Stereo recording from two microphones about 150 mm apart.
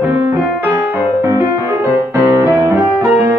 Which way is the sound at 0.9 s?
20° right (ahead or behind).